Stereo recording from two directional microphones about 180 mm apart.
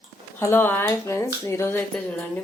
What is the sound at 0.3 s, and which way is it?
Speech, 15° left (ahead or behind).